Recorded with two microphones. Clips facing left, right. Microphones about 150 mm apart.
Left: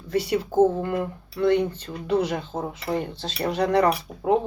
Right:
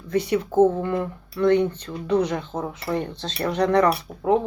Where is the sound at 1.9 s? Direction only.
35° left (ahead or behind).